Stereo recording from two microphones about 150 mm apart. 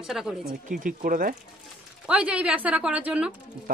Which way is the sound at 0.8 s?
65° right (ahead or behind).